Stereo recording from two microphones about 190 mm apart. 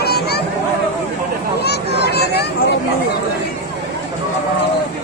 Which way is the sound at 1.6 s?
60° left (ahead or behind).